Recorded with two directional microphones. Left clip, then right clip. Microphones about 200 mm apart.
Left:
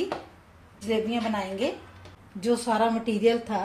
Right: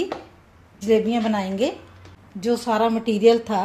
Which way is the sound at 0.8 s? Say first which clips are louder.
Right 8 dB; 50° right (ahead or behind).